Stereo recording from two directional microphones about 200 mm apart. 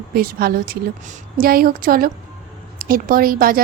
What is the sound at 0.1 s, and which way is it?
A woman's voice, 50° right (ahead or behind).